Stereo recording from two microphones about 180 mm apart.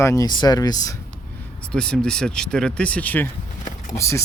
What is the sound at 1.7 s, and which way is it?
Speech, 5° left (ahead or behind).